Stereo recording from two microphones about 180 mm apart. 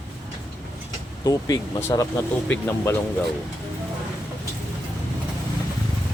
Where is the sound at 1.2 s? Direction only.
20° left (ahead or behind).